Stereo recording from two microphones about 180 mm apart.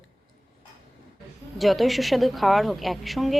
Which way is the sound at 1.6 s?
Centre (ahead or behind).